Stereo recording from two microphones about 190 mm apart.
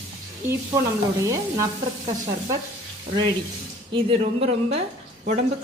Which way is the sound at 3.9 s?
30° right (ahead or behind).